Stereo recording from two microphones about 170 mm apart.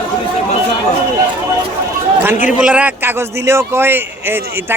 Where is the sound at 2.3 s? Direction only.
45° left (ahead or behind).